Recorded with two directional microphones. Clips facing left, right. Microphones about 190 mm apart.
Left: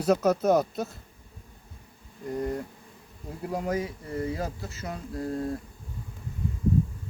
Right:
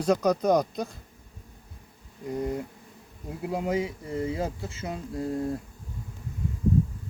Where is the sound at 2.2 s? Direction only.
15° right (ahead or behind).